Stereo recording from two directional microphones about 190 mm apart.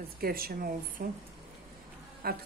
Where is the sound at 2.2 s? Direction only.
55° right (ahead or behind).